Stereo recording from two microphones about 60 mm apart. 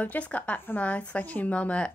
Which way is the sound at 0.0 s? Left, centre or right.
Left.